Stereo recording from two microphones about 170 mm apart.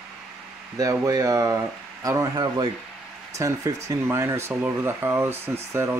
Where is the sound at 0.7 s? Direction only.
20° right (ahead or behind).